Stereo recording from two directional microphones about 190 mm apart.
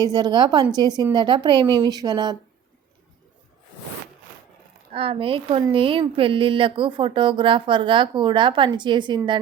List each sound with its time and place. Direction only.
0.0 s speech: 20° right (ahead or behind)
4.9 s speech: 30° right (ahead or behind)